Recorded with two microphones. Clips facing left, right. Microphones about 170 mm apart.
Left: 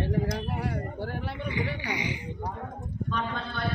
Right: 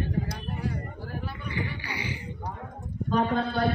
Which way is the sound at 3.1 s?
40° right (ahead or behind).